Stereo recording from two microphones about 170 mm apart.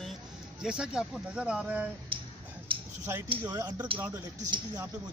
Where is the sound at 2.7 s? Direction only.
30° right (ahead or behind).